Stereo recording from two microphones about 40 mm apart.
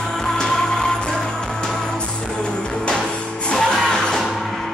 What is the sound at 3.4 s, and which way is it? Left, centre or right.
Music, centre.